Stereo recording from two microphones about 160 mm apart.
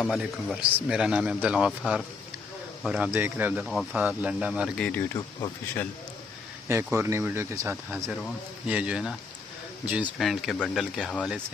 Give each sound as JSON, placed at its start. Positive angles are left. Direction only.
{"t": 0.0, "sound": "speech", "side_deg": 0}
{"t": 4.7, "sound": "speech", "side_deg": 5}
{"t": 5.1, "sound": "speech", "side_deg": 20}
{"t": 6.7, "sound": "speech", "side_deg": -15}